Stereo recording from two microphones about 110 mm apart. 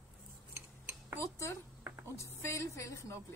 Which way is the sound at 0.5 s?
20° right (ahead or behind).